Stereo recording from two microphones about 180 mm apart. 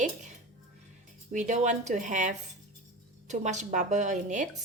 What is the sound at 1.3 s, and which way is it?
A woman's voice, 40° right (ahead or behind).